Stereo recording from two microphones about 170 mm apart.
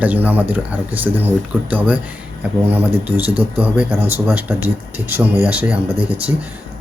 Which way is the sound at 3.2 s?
10° right (ahead or behind).